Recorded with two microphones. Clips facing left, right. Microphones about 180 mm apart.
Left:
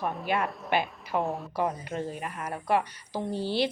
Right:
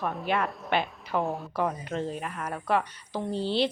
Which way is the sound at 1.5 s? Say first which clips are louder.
Right 1 dB; 10° left (ahead or behind).